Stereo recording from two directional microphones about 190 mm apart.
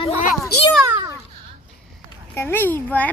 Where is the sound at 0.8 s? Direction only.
15° right (ahead or behind).